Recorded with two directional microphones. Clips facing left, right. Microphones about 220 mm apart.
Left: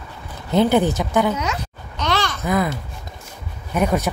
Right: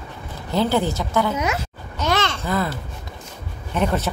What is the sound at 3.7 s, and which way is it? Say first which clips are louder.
Speech: left 2 dB; 10° left (ahead or behind).